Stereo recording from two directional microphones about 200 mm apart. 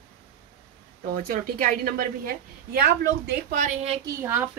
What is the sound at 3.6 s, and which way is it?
Speech, 30° right (ahead or behind).